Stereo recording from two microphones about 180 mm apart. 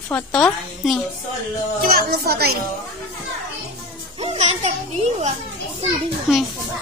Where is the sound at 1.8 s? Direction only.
55° right (ahead or behind).